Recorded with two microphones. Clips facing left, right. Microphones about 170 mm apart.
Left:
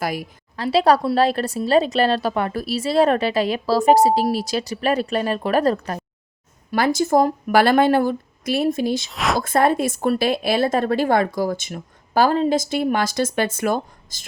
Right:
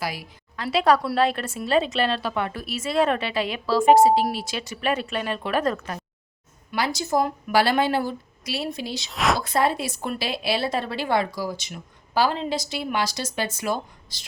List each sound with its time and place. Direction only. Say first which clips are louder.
0.0 s a woman's voice: left 6 dB; 50° left (ahead or behind)
0.5 s a woman's voice: left 4 dB; 35° left (ahead or behind)
6.7 s a woman's voice: left 7 dB; 50° left (ahead or behind)
9.0 s a woman's voice: left 1 dB; centre (ahead or behind)
9.4 s a woman's voice: left 5 dB; 50° left (ahead or behind)